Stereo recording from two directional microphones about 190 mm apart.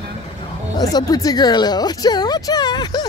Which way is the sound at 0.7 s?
20° left (ahead or behind).